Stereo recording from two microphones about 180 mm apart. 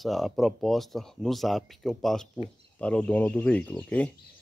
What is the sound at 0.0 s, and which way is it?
Speech, centre (ahead or behind).